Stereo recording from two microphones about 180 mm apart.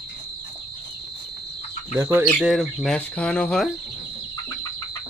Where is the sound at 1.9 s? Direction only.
15° right (ahead or behind).